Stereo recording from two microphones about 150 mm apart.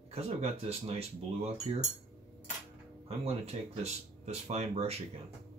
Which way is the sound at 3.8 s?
45° right (ahead or behind).